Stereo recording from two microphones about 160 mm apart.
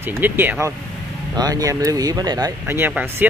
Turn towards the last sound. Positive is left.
turn(degrees=-10)  # may be behind; listen again after turning